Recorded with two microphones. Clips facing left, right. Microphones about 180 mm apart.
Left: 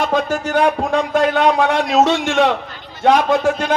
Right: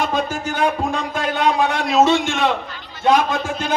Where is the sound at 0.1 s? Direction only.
75° left (ahead or behind).